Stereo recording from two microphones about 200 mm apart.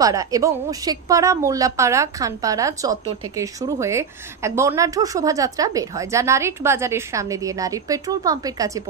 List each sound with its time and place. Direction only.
0.0 s a woman's voice: 15° right (ahead or behind)